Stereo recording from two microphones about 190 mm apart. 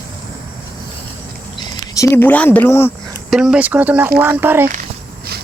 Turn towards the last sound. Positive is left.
turn(degrees=-10)  # may be behind; listen again after turning